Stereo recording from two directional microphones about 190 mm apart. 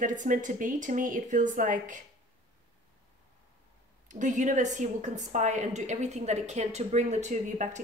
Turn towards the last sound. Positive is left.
turn(degrees=-40)  # may be behind; listen again after turning